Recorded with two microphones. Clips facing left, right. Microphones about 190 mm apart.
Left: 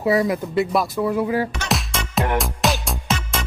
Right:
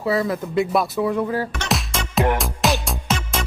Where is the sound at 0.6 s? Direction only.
Centre (ahead or behind).